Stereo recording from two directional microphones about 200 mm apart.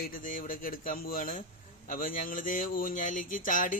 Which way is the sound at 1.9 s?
45° left (ahead or behind).